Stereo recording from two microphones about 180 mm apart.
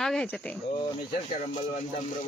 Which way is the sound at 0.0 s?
5° left (ahead or behind).